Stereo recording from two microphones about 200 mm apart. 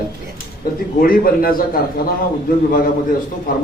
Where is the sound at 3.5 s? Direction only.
45° left (ahead or behind).